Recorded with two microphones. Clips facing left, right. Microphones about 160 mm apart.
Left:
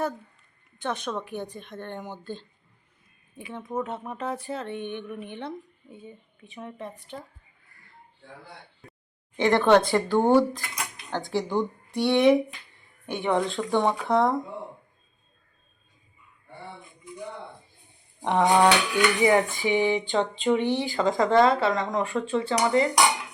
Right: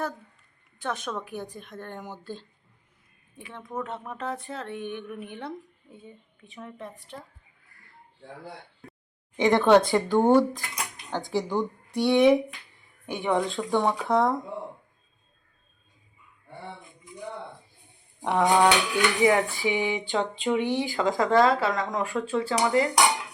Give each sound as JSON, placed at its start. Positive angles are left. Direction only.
{"t": 0.8, "sound": "speech", "side_deg": 0}
{"t": 9.5, "sound": "speech", "side_deg": 0}
{"t": 10.7, "sound": "dishes", "side_deg": 0}
{"t": 11.3, "sound": "speech", "side_deg": 0}
{"t": 18.2, "sound": "a sound", "side_deg": 0}
{"t": 18.5, "sound": "speech", "side_deg": 0}